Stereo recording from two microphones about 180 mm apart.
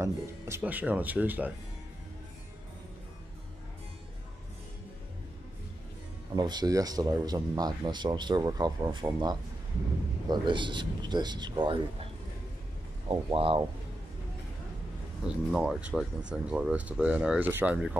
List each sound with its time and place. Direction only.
0.0 s speech: 10° right (ahead or behind)
6.3 s speech: 25° right (ahead or behind)
13.1 s speech: 30° right (ahead or behind)
15.2 s speech: centre (ahead or behind)